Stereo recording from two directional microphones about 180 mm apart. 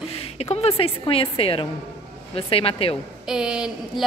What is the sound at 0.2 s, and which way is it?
A woman's voice, 35° left (ahead or behind).